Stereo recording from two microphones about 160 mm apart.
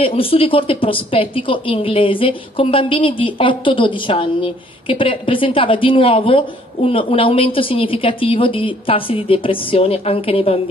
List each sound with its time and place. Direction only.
0.0 s a woman's voice: 35° left (ahead or behind)